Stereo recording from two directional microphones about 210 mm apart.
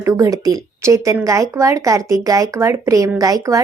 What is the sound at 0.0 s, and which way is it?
Speech, 15° right (ahead or behind).